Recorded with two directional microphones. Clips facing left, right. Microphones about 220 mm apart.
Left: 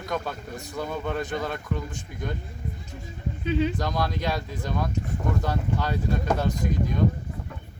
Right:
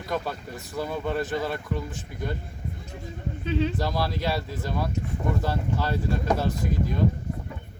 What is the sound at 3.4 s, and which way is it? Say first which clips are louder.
Speech: left 1 dB; 5° left (ahead or behind).